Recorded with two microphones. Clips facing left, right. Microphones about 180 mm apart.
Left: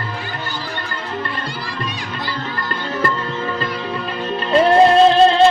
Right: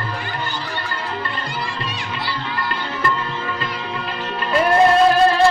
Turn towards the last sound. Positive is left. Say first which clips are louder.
# left 3 dB
turn(degrees=20)  # may be behind; listen again after turning